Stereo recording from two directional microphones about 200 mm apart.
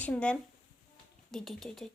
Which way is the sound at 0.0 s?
5° left (ahead or behind).